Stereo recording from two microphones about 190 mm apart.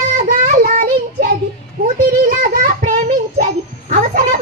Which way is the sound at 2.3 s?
50° right (ahead or behind).